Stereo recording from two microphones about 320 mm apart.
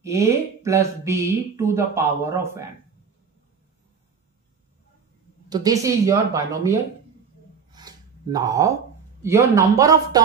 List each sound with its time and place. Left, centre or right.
0.0 s speech: centre
5.5 s speech: centre
7.7 s a sound: centre
9.2 s speech: centre